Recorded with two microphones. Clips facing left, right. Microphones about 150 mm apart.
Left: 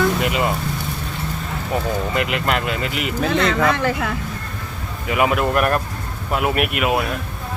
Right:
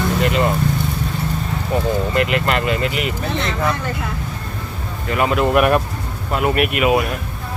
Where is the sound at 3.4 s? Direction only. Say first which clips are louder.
Left 4 dB; 90° left.